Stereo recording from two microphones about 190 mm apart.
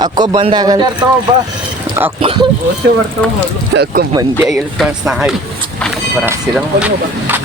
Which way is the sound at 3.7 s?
80° right.